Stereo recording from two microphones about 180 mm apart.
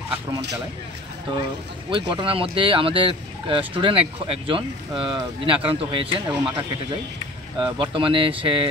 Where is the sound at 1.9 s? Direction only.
30° right (ahead or behind).